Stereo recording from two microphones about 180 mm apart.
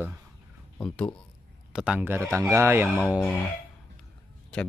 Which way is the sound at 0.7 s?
5° left (ahead or behind).